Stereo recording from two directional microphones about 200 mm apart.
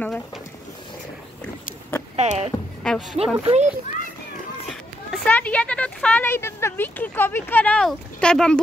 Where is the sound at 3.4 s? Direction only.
35° right (ahead or behind).